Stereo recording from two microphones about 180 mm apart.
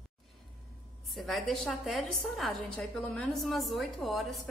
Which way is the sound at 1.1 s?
Centre (ahead or behind).